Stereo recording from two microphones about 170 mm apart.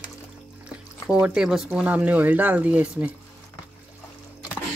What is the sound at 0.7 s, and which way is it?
Speech, 5° right (ahead or behind).